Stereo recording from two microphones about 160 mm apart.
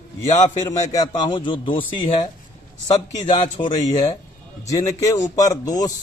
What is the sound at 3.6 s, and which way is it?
Speech, 50° left (ahead or behind).